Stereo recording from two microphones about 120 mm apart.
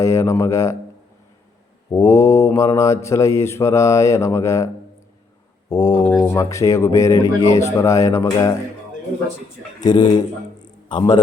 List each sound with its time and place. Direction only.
0.0 s mantra: 25° left (ahead or behind)
1.9 s mantra: 25° left (ahead or behind)
5.6 s speech: 30° left (ahead or behind)
6.1 s mantra: 25° left (ahead or behind)
9.8 s speech: 35° left (ahead or behind)
10.6 s a sound: 40° left (ahead or behind)